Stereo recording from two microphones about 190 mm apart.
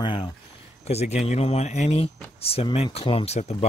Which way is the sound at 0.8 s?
35° left (ahead or behind).